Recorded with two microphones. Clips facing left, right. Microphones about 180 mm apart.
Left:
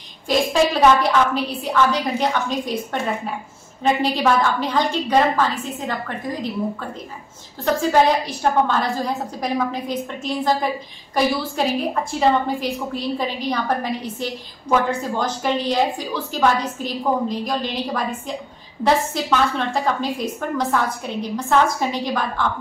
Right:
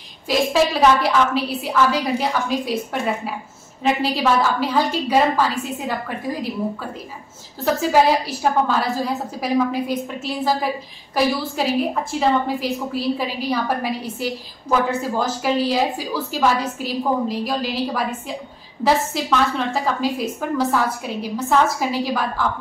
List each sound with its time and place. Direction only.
0.3 s a woman's voice: 5° right (ahead or behind)
7.6 s a woman's voice: 5° right (ahead or behind)